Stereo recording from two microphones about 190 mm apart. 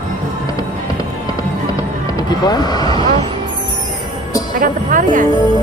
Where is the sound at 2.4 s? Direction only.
20° left (ahead or behind).